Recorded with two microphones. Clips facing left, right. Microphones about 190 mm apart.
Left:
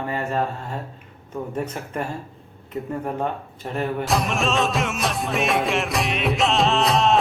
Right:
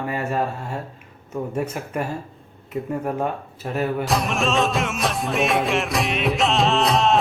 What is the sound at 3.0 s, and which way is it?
Speech, 5° right (ahead or behind).